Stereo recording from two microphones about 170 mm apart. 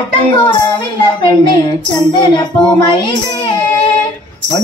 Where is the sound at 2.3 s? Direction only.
25° left (ahead or behind).